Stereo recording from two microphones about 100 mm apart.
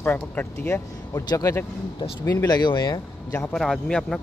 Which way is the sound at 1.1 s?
35° left (ahead or behind).